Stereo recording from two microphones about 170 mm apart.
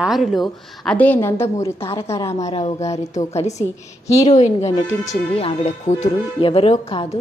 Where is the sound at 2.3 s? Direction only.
40° left (ahead or behind).